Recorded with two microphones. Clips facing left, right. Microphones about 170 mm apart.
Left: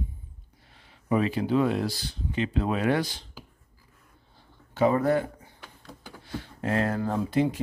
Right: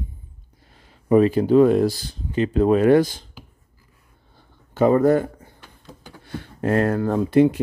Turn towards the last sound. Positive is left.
turn(degrees=-60)  # may be behind; listen again after turning